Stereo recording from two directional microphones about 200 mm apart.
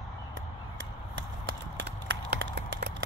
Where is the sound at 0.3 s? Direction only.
70° right (ahead or behind).